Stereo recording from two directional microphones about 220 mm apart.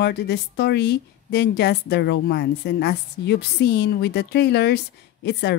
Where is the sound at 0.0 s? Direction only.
50° left (ahead or behind).